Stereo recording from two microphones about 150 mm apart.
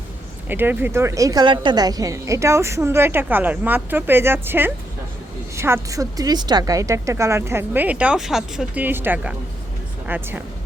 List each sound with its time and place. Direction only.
0.4 s a woman's voice: 15° right (ahead or behind)